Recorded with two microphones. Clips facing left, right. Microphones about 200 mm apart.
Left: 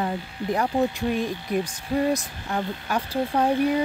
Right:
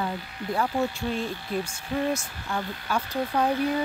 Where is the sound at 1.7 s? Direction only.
35° left (ahead or behind).